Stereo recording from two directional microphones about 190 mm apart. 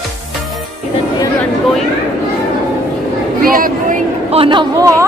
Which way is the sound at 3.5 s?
45° right (ahead or behind).